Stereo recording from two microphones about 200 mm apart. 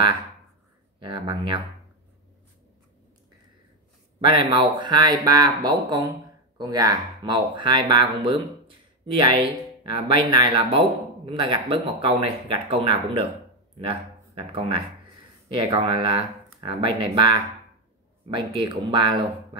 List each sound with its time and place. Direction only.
0.9 s speech: 25° right (ahead or behind)
4.3 s speech: 25° right (ahead or behind)
18.3 s speech: 25° right (ahead or behind)